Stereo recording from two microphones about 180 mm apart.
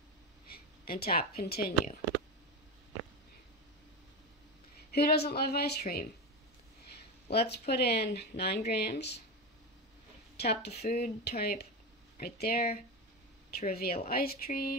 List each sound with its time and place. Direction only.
0.5 s speech: 60° left (ahead or behind)
4.9 s speech: 65° left (ahead or behind)
10.3 s speech: 65° left (ahead or behind)